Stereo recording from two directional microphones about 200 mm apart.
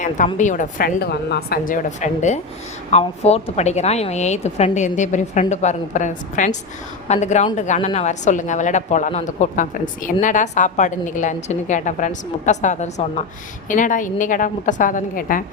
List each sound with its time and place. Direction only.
0.3 s speech: 40° left (ahead or behind)